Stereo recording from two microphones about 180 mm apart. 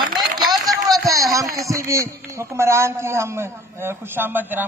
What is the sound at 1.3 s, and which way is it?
Speech, 20° right (ahead or behind).